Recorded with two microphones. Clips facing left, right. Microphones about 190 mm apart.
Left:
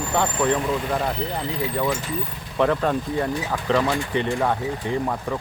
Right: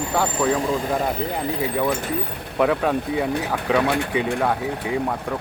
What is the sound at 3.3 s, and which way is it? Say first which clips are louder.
Speech: right 1 dB; 60° right (ahead or behind).